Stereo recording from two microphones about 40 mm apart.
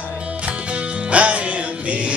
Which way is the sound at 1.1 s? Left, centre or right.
Right.